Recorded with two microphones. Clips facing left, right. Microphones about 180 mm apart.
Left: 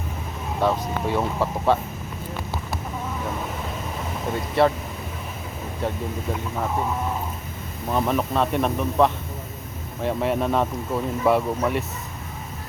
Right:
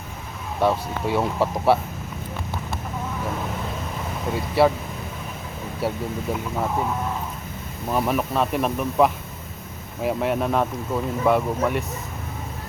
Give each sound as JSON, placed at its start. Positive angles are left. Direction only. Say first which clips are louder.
{"t": 0.6, "sound": "speech", "louder": "right 1 dB", "side_deg": -10}
{"t": 4.4, "sound": "speech", "louder": "right 1 dB", "side_deg": -5}
{"t": 5.8, "sound": "speech", "louder": "right 2 dB", "side_deg": -5}
{"t": 7.9, "sound": "speech", "louder": "even", "side_deg": -5}